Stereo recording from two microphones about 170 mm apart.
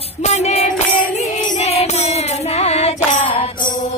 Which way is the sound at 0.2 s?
40° left (ahead or behind).